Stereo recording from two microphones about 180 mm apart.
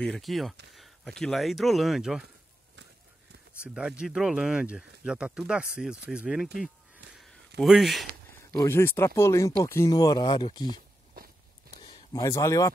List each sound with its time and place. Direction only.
0.0 s speech: centre (ahead or behind)
3.6 s speech: 5° right (ahead or behind)
7.2 s a sound: centre (ahead or behind)
8.5 s speech: 15° left (ahead or behind)
11.2 s biting: 55° right (ahead or behind)
11.8 s speech: 25° left (ahead or behind)